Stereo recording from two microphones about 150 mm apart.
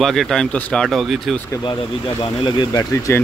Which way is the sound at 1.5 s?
30° left (ahead or behind).